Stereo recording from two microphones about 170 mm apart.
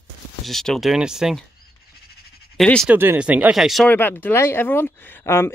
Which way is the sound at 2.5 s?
5° left (ahead or behind).